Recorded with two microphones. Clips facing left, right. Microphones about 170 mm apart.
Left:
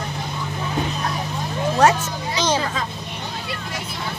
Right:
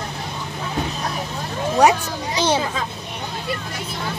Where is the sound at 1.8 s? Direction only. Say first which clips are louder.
Right 1 dB; 15° right (ahead or behind).